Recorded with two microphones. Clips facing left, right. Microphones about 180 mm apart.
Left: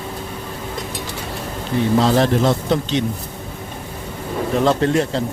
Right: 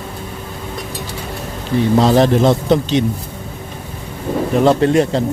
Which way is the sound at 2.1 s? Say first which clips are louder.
Right 4 dB; 20° right (ahead or behind).